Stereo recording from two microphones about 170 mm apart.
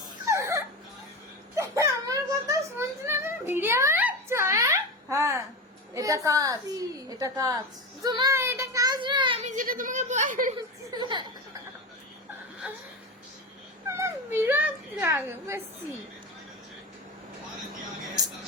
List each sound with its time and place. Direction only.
0.3 s a sound: 20° right (ahead or behind)
1.5 s children playing: 20° right (ahead or behind)
5.9 s a sound: 20° right (ahead or behind)
6.2 s a woman's voice: 20° right (ahead or behind)
8.0 s child singing: 25° right (ahead or behind)
9.4 s speech: 45° right (ahead or behind)
10.9 s speech: 25° right (ahead or behind)
12.6 s speech: 5° right (ahead or behind)
13.8 s speech: 15° right (ahead or behind)